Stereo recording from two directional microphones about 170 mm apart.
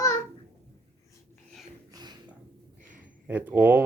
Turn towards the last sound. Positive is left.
turn(degrees=-10)  # may be behind; listen again after turning